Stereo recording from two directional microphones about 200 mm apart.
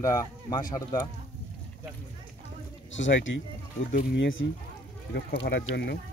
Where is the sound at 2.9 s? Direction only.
70° left (ahead or behind).